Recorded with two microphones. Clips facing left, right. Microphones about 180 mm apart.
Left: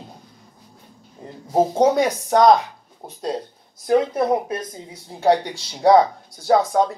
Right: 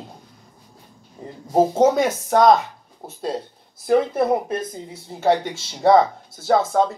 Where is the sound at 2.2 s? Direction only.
5° right (ahead or behind).